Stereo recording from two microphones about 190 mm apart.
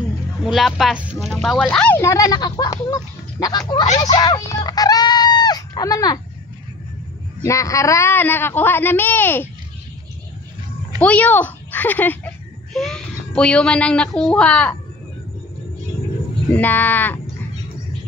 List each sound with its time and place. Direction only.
0.4 s speech: centre (ahead or behind); by 3.8 s 20° left (ahead or behind)
4.0 s a sound: 20° left (ahead or behind)
7.4 s speech: 15° left (ahead or behind)
11.0 s speech: 5° left (ahead or behind)
16.5 s speech: 10° left (ahead or behind)